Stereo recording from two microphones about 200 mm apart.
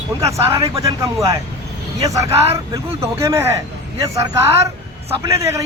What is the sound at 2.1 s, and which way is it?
A man's voice, 15° right (ahead or behind).